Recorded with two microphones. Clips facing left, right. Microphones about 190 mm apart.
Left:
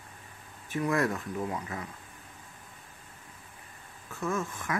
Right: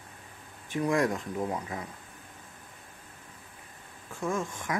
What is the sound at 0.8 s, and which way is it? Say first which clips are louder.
Speech: right 2 dB; 15° right (ahead or behind).